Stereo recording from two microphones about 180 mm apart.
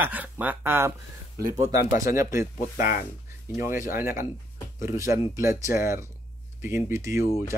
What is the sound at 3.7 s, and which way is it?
Speech, 50° left (ahead or behind).